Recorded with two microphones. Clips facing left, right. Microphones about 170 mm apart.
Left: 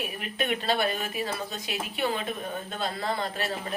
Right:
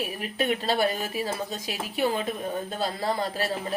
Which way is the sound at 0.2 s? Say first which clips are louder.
Right 3 dB; 35° right (ahead or behind).